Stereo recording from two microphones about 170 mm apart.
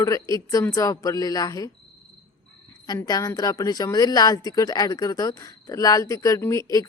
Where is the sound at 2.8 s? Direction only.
20° left (ahead or behind).